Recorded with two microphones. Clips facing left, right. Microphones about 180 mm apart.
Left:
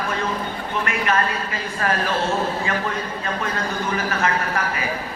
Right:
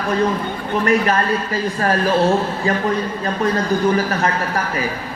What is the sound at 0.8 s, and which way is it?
Speech, 35° right (ahead or behind).